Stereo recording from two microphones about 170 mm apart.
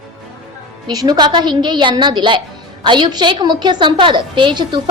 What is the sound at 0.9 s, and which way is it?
A woman's voice, 25° right (ahead or behind).